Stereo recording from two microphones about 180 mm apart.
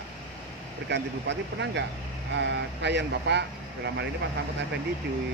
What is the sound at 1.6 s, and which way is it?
Speech, 75° right (ahead or behind).